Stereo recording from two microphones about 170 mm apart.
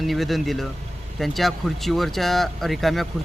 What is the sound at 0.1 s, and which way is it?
A man's voice, centre (ahead or behind).